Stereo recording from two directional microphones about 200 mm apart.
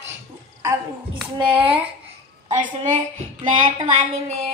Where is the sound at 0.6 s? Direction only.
15° right (ahead or behind).